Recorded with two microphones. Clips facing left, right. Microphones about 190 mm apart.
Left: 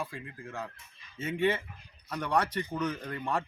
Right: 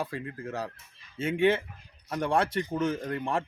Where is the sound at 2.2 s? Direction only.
30° right (ahead or behind).